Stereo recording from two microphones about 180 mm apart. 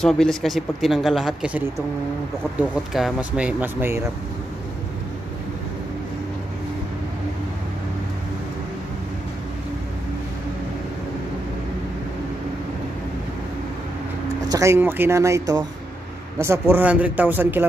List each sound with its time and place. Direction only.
0.0 s speech: 5° left (ahead or behind)
14.5 s speech: 15° right (ahead or behind)